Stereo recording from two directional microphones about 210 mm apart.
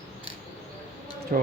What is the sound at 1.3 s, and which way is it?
Speech, 45° right (ahead or behind).